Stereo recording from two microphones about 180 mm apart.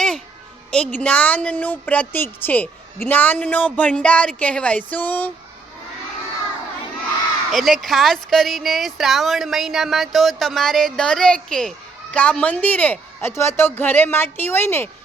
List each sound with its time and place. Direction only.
0.7 s a man's voice: 10° left (ahead or behind)
7.5 s a man's voice: centre (ahead or behind)